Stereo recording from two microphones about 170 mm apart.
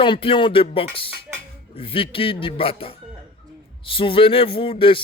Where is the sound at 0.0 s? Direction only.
30° left (ahead or behind).